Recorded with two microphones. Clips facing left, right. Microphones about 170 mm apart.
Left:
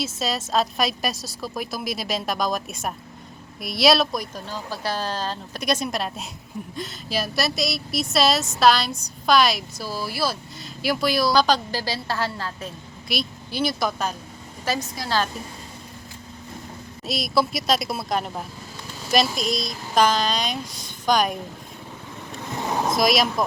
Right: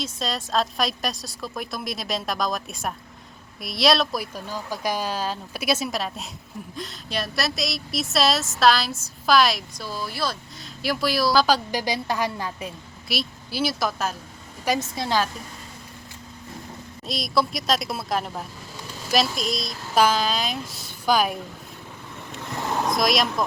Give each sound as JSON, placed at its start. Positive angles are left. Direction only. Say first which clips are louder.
{"t": 0.0, "sound": "a woman's voice", "louder": "left 2 dB", "side_deg": 5}
{"t": 14.8, "sound": "a woman's voice", "louder": "right 1 dB", "side_deg": -25}
{"t": 17.1, "sound": "a woman's voice", "louder": "left 1 dB", "side_deg": 0}
{"t": 22.9, "sound": "a woman's voice", "louder": "left 2 dB", "side_deg": 0}